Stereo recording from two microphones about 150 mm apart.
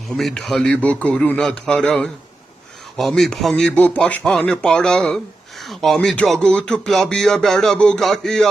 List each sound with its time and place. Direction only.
0.2 s speech: centre (ahead or behind)